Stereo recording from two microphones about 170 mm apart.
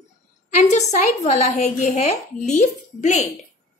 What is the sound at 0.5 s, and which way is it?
A woman's voice, 40° left (ahead or behind).